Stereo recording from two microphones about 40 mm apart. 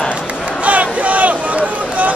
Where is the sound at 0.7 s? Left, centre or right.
Right.